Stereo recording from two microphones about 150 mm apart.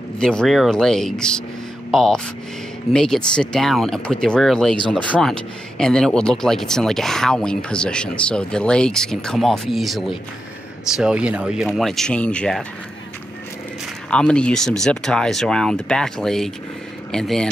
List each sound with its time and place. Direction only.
0.2 s speech: 5° left (ahead or behind)
14.1 s speech: 5° left (ahead or behind)